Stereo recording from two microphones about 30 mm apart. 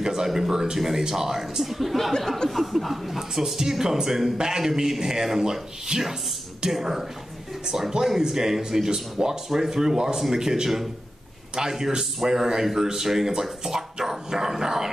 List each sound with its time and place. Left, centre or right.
0.0 s a man's voice: centre
2.4 s chuckle: left
2.8 s a man's voice: centre
11.7 s a man's voice: centre